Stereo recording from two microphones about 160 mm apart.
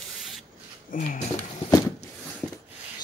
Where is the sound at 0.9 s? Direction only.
55° left (ahead or behind).